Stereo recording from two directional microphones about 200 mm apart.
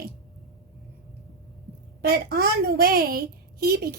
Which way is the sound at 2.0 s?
50° right (ahead or behind).